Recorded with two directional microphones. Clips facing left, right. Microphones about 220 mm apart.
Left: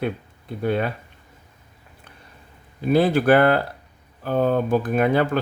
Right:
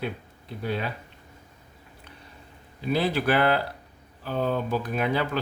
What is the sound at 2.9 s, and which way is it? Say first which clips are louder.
Speech: left 8 dB; 50° left (ahead or behind).